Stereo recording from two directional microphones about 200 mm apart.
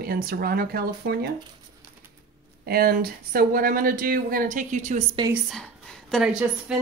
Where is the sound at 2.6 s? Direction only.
50° right (ahead or behind).